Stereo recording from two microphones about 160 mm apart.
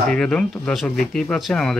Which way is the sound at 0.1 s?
5° left (ahead or behind).